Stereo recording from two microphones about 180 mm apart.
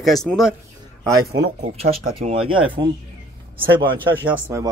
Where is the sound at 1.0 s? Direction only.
20° right (ahead or behind).